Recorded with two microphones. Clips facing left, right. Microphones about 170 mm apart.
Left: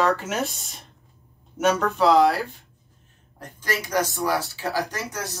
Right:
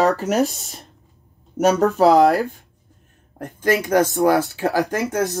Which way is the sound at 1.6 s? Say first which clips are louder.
Right 6 dB; 40° right (ahead or behind).